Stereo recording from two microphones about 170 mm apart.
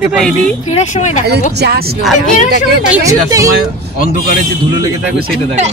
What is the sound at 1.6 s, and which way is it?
Speech, 65° right (ahead or behind).